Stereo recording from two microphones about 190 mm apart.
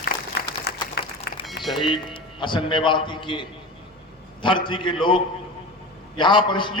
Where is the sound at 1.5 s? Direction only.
Centre (ahead or behind).